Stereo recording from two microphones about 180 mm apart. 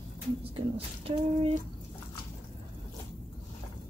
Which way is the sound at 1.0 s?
35° right (ahead or behind).